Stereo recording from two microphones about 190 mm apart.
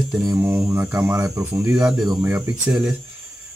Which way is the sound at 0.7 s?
15° right (ahead or behind).